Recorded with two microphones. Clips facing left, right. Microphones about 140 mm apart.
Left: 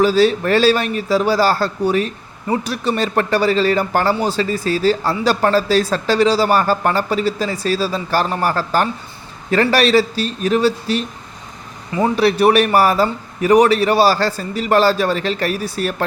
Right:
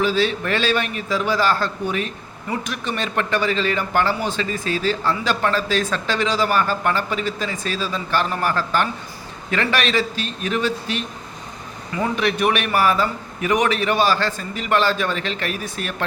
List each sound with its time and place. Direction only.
0.0 s a man's voice: 40° left (ahead or behind)